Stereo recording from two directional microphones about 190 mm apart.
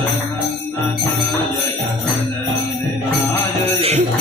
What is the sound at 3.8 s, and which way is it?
Music, 35° right (ahead or behind).